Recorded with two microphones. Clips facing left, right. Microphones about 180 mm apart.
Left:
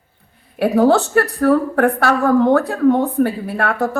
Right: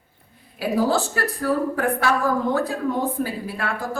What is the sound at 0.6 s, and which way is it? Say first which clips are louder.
A woman's voice: left 8 dB; 65° left (ahead or behind).